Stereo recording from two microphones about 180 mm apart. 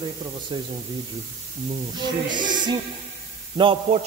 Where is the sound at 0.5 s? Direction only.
25° right (ahead or behind).